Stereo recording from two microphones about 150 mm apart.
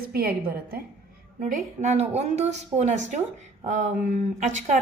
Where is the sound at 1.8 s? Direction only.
50° right (ahead or behind).